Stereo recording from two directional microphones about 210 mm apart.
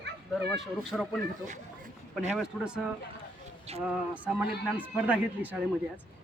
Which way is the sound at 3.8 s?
5° right (ahead or behind).